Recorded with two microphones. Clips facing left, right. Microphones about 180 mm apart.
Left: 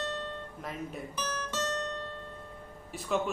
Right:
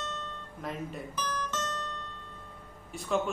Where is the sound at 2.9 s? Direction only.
Centre (ahead or behind).